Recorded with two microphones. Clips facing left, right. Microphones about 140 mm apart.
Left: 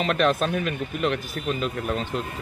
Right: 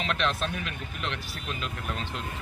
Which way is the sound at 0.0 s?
45° left (ahead or behind).